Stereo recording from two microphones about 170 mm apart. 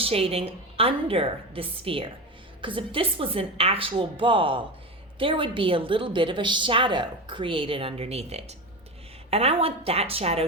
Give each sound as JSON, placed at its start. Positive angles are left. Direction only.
{"t": 0.0, "sound": "a woman's voice", "side_deg": -35}